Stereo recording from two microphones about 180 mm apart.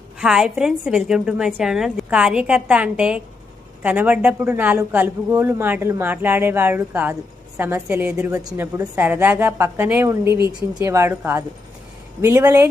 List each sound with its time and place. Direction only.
0.2 s a woman's voice: 5° right (ahead or behind)